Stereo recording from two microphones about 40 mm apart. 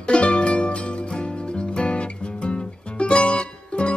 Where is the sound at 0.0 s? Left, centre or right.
Left.